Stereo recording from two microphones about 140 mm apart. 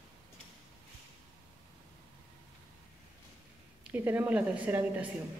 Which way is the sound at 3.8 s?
15° right (ahead or behind).